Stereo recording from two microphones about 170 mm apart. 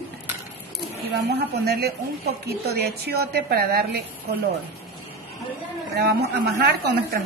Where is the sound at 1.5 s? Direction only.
70° right (ahead or behind).